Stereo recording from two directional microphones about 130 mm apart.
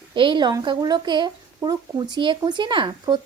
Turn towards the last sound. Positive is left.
turn(degrees=-35)  # may be behind; listen again after turning